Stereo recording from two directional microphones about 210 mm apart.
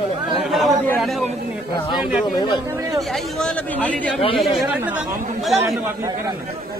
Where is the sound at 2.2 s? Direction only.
20° left (ahead or behind).